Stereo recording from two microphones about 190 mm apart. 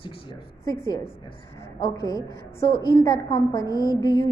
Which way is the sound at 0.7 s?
20° left (ahead or behind).